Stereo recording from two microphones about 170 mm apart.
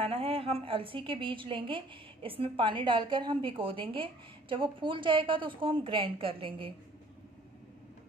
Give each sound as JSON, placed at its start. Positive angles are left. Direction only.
{"t": 0.0, "sound": "a woman's voice", "side_deg": -35}